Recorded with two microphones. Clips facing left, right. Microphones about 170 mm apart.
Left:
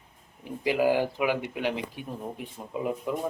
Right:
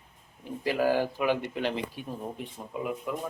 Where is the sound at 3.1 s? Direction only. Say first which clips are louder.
Left 3 dB; 25° left (ahead or behind).